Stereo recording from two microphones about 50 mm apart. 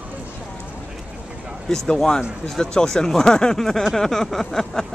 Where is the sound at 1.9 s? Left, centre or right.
Centre.